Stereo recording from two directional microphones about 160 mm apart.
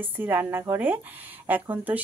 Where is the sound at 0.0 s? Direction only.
10° right (ahead or behind).